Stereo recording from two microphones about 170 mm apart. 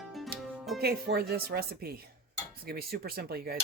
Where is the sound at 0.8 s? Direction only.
65° right (ahead or behind).